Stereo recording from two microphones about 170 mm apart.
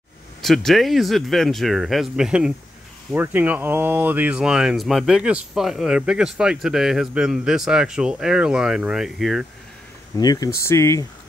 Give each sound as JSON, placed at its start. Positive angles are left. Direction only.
{"t": 0.4, "sound": "speech", "side_deg": 0}
{"t": 10.1, "sound": "speech", "side_deg": 20}